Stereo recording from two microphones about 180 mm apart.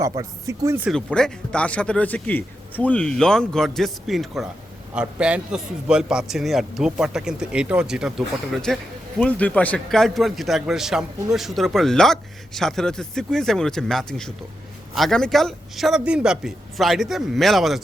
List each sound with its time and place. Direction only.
0.2 s speech: 15° right (ahead or behind)
0.9 s a man's voice: 5° left (ahead or behind)